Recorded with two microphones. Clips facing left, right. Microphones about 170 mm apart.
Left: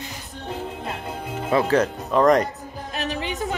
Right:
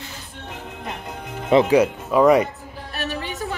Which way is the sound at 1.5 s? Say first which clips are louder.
Right 4 dB; 15° right (ahead or behind).